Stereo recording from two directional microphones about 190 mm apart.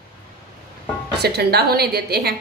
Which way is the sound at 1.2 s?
55° right (ahead or behind).